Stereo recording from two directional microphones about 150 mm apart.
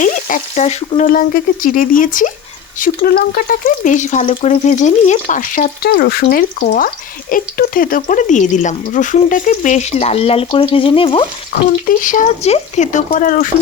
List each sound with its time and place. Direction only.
0.0 s speech: 55° left (ahead or behind)
2.7 s speech: 75° left (ahead or behind)
6.3 s speech: 75° left (ahead or behind); by 11.3 s 35° left (ahead or behind)
11.9 s speech: 60° left (ahead or behind)